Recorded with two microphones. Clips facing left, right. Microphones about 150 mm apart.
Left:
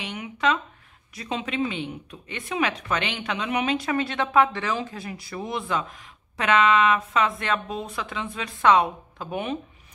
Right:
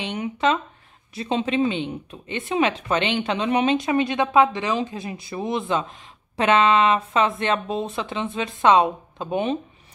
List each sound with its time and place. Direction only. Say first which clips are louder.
0.0 s speech: right 3 dB; 25° right (ahead or behind)